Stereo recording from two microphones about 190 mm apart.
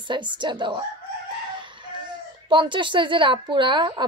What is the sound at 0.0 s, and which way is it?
Speech, 25° right (ahead or behind).